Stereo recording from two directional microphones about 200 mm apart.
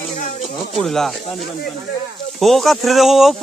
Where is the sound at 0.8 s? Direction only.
Centre (ahead or behind).